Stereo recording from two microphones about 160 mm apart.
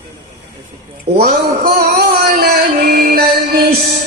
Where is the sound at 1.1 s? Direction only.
75° right (ahead or behind).